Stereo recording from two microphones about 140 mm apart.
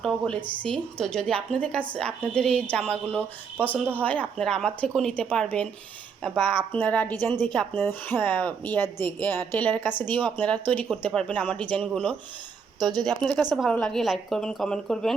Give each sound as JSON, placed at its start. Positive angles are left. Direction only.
{"t": 0.0, "sound": "a woman's voice", "side_deg": 5}
{"t": 12.8, "sound": "a woman's voice", "side_deg": -30}
{"t": 13.1, "sound": "a woman's voice", "side_deg": 5}